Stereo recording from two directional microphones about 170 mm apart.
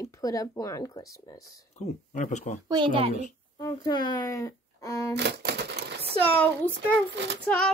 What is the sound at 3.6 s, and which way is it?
A woman's voice, 25° left (ahead or behind).